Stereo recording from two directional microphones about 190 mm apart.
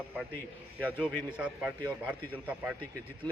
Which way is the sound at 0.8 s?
10° right (ahead or behind).